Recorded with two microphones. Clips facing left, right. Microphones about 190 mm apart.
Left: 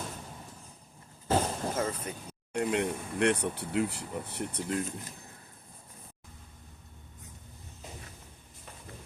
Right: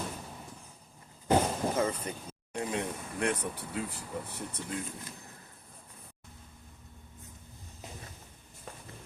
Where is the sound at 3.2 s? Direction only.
70° left (ahead or behind).